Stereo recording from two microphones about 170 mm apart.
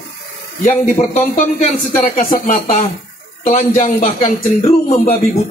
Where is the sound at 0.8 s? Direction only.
45° left (ahead or behind).